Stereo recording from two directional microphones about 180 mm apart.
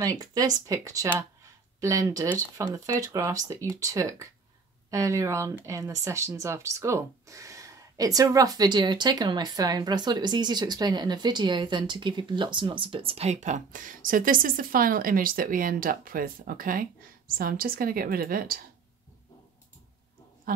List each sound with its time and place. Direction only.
0.0 s a woman's voice: 20° right (ahead or behind); by 18.6 s 55° right (ahead or behind)